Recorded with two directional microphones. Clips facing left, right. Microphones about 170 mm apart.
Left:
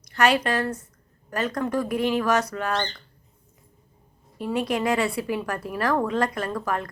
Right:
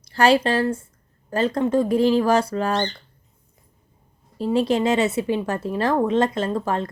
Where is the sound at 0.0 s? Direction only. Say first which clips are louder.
Right 4 dB; 30° right (ahead or behind).